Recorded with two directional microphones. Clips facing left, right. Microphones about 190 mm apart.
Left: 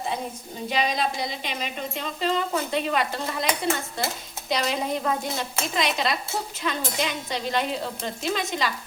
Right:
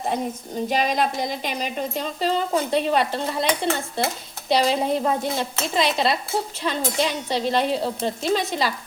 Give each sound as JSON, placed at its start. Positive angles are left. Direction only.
{"t": 0.7, "sound": "speech", "side_deg": -45}